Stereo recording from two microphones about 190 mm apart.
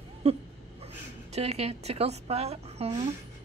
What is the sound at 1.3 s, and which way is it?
A woman's voice, 35° right (ahead or behind).